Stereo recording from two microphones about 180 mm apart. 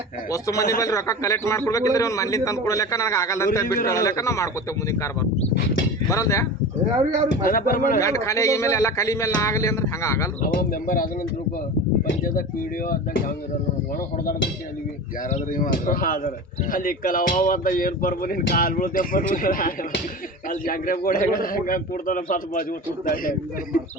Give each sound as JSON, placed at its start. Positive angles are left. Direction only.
{"t": 0.3, "sound": "a man's voice", "side_deg": 20}
{"t": 6.1, "sound": "a man's voice", "side_deg": 15}
{"t": 7.4, "sound": "speech", "side_deg": 50}
{"t": 7.9, "sound": "a man's voice", "side_deg": 15}
{"t": 10.4, "sound": "speech", "side_deg": 50}
{"t": 12.9, "sound": "speech", "side_deg": 50}
{"t": 15.3, "sound": "speech", "side_deg": 50}